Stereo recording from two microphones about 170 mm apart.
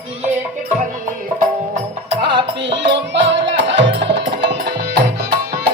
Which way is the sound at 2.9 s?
90° right.